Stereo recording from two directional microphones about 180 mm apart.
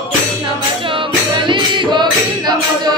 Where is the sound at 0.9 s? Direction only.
25° right (ahead or behind).